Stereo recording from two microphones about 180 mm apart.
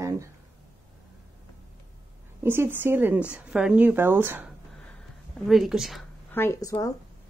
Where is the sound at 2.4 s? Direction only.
10° right (ahead or behind).